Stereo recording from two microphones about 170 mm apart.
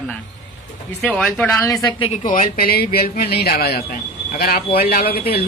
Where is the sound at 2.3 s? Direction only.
55° left (ahead or behind).